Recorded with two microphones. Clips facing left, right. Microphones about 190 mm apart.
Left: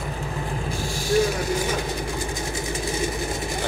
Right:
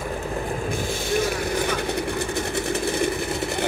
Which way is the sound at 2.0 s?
65° right (ahead or behind).